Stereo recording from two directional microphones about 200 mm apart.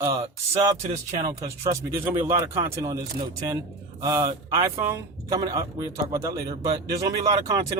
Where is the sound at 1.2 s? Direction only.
20° right (ahead or behind).